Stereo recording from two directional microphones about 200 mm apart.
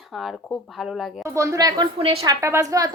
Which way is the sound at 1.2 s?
15° right (ahead or behind).